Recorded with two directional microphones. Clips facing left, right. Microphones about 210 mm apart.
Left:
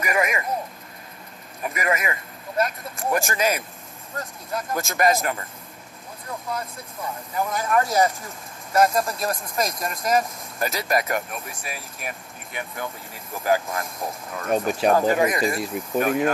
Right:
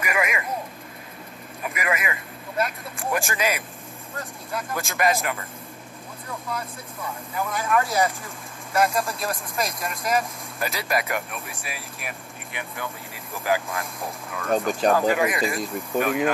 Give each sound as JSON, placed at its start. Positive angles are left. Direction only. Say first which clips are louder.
{"t": 0.0, "sound": "vehicle", "louder": "left 2 dB", "side_deg": 40}
{"t": 1.6, "sound": "speech", "louder": "left 2 dB", "side_deg": 40}
{"t": 6.5, "sound": "speech", "louder": "left 1 dB", "side_deg": 40}
{"t": 14.7, "sound": "speech", "louder": "left 1 dB", "side_deg": 5}
{"t": 15.0, "sound": "speech", "louder": "left 2 dB", "side_deg": 40}
{"t": 15.6, "sound": "speech", "louder": "left 1 dB", "side_deg": 5}
{"t": 16.0, "sound": "speech", "louder": "left 1 dB", "side_deg": 40}